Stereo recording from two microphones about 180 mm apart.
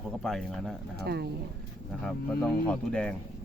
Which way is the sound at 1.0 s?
60° right (ahead or behind).